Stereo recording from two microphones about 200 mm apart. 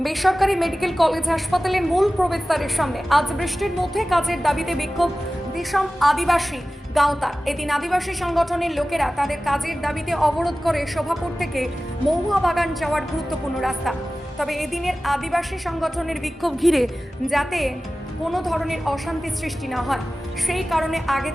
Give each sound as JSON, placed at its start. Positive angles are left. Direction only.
{"t": 0.0, "sound": "a woman's voice", "side_deg": 0}